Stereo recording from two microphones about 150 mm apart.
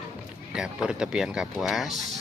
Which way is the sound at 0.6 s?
5° right (ahead or behind).